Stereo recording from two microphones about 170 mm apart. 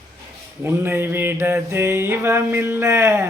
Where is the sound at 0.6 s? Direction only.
15° right (ahead or behind).